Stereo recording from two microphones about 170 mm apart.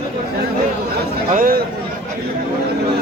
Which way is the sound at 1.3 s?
55° right (ahead or behind).